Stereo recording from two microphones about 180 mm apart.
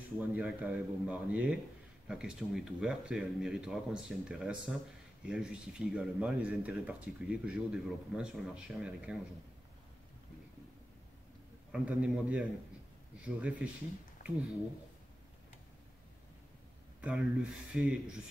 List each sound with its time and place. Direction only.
0.3 s speech: 5° right (ahead or behind)
11.7 s speech: 5° right (ahead or behind)
14.2 s a sound: 50° left (ahead or behind)
17.0 s speech: 5° right (ahead or behind)